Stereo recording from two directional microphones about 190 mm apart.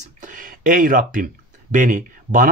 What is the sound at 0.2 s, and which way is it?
Speech, 45° right (ahead or behind).